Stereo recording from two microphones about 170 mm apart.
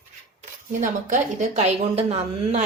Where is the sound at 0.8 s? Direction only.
45° right (ahead or behind).